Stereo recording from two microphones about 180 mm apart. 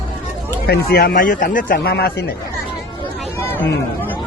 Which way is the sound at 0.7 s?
55° left (ahead or behind).